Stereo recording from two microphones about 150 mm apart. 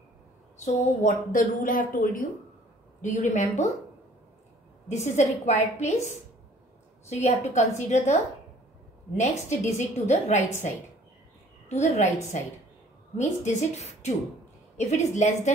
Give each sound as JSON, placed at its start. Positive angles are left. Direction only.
{"t": 0.6, "sound": "a woman's voice", "side_deg": 55}
{"t": 3.0, "sound": "a woman's voice", "side_deg": 50}
{"t": 4.8, "sound": "a woman's voice", "side_deg": 50}
{"t": 7.1, "sound": "a woman's voice", "side_deg": 50}
{"t": 11.7, "sound": "a woman's voice", "side_deg": 50}